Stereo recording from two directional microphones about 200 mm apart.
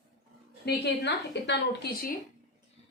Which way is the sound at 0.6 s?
55° left (ahead or behind).